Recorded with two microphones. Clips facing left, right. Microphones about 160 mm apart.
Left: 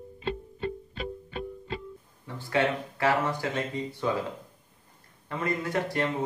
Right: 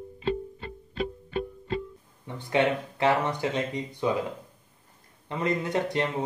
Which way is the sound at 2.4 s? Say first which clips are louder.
Right 2 dB; 20° right (ahead or behind).